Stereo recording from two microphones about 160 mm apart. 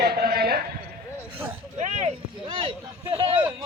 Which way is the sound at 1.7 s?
50° right (ahead or behind).